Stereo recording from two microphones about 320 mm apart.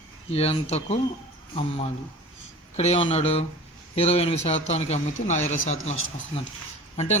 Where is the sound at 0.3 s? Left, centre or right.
Centre.